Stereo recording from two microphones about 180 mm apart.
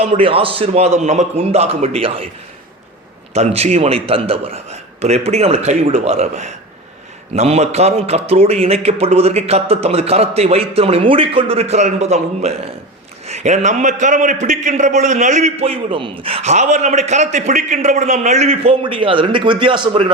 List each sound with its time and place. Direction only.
0.0 s a man's voice: 35° right (ahead or behind)
3.3 s a man's voice: 35° right (ahead or behind)